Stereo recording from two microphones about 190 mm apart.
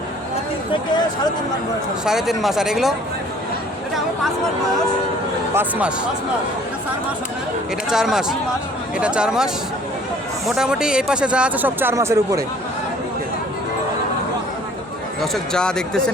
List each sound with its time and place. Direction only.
0.7 s speech: 20° left (ahead or behind)
2.0 s speech: centre (ahead or behind)
7.9 s speech: centre (ahead or behind)
15.2 s speech: 5° left (ahead or behind)